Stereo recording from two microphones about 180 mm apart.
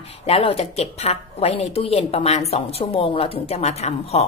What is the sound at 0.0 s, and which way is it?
A woman's voice, 35° left (ahead or behind).